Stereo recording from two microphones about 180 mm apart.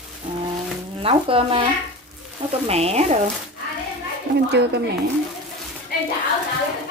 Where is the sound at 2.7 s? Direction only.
35° right (ahead or behind).